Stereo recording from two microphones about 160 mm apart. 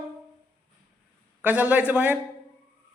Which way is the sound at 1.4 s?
10° right (ahead or behind).